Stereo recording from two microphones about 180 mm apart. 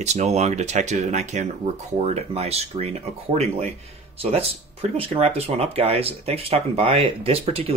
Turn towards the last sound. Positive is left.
turn(degrees=-30)  # may be behind; listen again after turning